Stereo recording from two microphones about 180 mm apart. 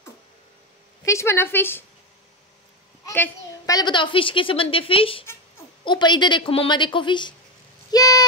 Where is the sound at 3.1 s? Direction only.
15° left (ahead or behind).